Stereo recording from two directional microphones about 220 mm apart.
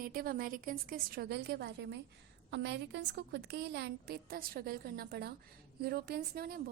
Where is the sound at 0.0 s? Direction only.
40° right (ahead or behind).